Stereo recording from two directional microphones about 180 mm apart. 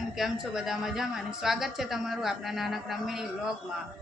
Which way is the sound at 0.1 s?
Centre (ahead or behind).